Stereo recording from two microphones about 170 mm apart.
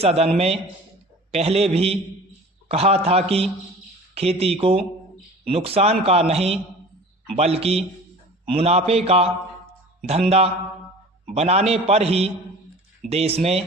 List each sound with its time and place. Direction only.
0.0 s a man's voice: 35° right (ahead or behind)